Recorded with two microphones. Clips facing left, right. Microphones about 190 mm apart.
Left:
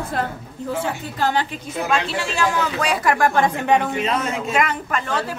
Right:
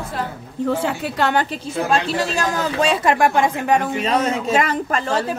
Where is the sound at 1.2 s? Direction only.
65° right (ahead or behind).